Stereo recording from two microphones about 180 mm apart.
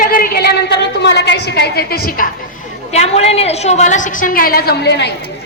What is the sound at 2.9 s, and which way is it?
A woman's voice, 35° left (ahead or behind).